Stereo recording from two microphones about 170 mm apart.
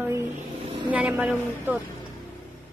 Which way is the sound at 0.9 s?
5° right (ahead or behind).